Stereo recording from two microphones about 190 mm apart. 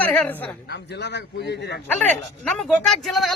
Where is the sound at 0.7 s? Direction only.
65° left (ahead or behind).